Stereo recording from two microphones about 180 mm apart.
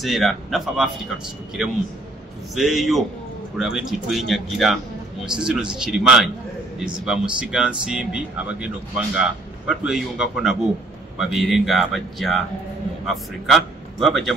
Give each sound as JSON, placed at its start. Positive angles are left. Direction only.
{"t": 0.0, "sound": "a man's voice", "side_deg": 0}